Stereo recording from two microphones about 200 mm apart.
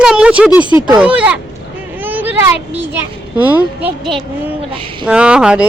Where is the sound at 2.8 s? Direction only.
10° right (ahead or behind).